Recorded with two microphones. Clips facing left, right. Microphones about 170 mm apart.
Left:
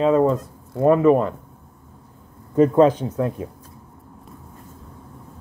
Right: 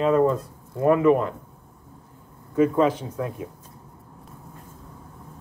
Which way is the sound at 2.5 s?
35° left (ahead or behind).